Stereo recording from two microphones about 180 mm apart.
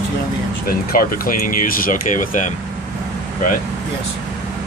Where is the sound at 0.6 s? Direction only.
55° left (ahead or behind).